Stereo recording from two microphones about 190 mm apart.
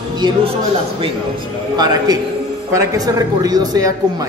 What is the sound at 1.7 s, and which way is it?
Speech, 20° right (ahead or behind).